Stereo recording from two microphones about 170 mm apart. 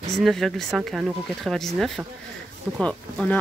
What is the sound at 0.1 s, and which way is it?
Speech, centre (ahead or behind).